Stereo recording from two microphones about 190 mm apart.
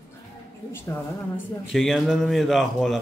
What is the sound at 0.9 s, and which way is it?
Speech, 15° left (ahead or behind).